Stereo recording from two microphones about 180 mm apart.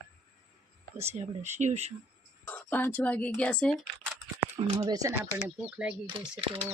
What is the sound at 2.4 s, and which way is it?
Speech, 10° left (ahead or behind).